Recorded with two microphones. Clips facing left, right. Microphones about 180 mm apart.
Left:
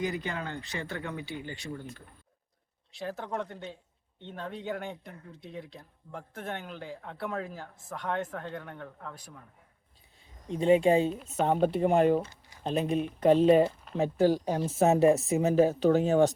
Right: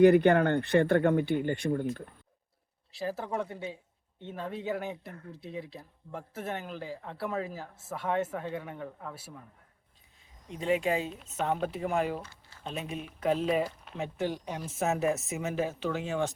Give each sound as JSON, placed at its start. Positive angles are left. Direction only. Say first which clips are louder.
{"t": 0.0, "sound": "speech", "louder": "right 14 dB", "side_deg": -60}
{"t": 2.9, "sound": "speech", "louder": "right 2 dB", "side_deg": -5}
{"t": 10.5, "sound": "a woman's voice", "louder": "left 6 dB", "side_deg": 30}
{"t": 12.1, "sound": "a sound", "louder": "left 10 dB", "side_deg": 20}
{"t": 12.6, "sound": "a woman's voice", "louder": "left 9 dB", "side_deg": 35}